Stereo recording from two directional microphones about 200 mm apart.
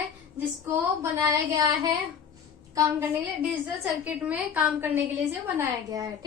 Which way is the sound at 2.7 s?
10° right (ahead or behind).